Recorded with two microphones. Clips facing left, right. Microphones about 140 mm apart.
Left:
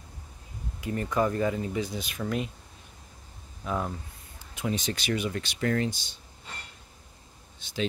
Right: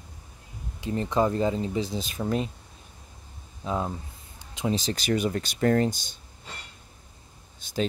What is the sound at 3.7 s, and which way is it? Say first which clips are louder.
Speech: right 2 dB; 25° right (ahead or behind).